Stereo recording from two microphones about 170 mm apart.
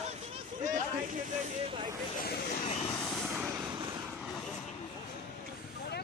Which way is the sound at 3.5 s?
15° right (ahead or behind).